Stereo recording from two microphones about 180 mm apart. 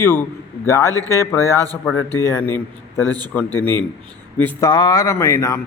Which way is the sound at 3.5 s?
10° left (ahead or behind).